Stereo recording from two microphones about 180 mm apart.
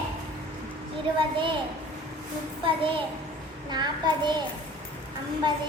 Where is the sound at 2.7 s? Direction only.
30° right (ahead or behind).